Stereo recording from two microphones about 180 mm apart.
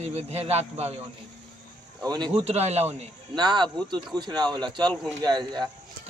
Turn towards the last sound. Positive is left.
turn(degrees=-20)  # may be behind; listen again after turning